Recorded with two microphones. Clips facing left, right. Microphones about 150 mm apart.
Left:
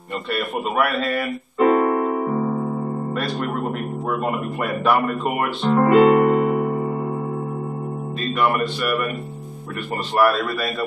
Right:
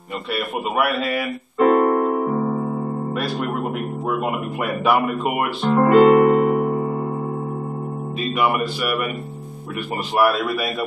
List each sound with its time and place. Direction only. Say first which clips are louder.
0.3 s keyboard: even; 5° right (ahead or behind)
3.2 s speech: right 1 dB; centre (ahead or behind)
8.4 s speech: even; 5° right (ahead or behind)
10.1 s a man's voice: even; 5° right (ahead or behind)